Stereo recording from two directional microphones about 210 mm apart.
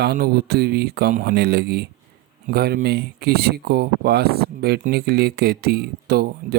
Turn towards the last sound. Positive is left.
turn(degrees=-50)  # may be behind; listen again after turning